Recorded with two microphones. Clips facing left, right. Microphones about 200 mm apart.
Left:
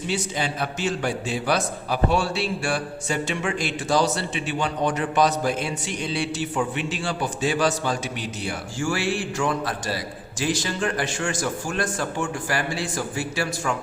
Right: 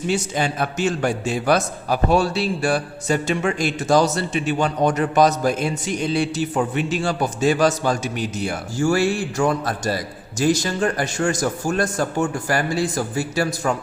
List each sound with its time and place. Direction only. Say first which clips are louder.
0.1 s a man's voice: right 4 dB; 45° right (ahead or behind)